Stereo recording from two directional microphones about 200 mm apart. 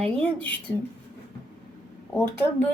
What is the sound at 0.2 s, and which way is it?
Speech, 5° left (ahead or behind).